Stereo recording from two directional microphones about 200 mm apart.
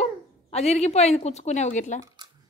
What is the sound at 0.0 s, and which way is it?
Speech, 30° left (ahead or behind).